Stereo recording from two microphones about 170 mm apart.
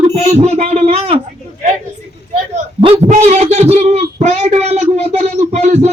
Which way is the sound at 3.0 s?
40° right (ahead or behind).